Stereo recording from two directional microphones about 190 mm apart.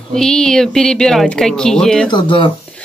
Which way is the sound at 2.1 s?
25° left (ahead or behind).